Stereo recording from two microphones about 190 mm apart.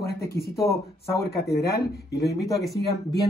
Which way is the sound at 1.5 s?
55° left (ahead or behind).